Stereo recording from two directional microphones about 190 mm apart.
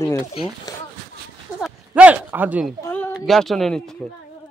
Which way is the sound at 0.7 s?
20° left (ahead or behind).